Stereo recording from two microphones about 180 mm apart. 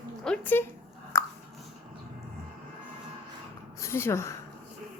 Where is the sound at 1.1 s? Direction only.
15° left (ahead or behind).